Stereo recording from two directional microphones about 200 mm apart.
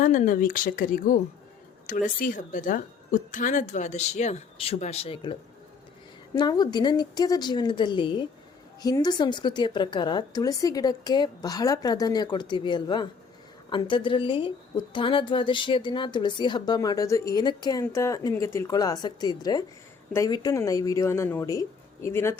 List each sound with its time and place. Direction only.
0.0 s a woman's voice: 40° left (ahead or behind); by 22.4 s 15° left (ahead or behind)